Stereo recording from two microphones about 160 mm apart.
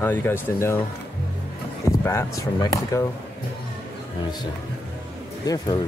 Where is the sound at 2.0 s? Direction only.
20° left (ahead or behind).